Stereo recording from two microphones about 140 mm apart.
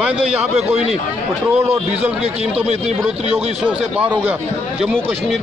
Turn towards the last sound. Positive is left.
turn(degrees=-10)  # may be behind; listen again after turning